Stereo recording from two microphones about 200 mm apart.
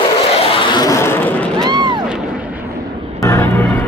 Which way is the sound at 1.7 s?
20° right (ahead or behind).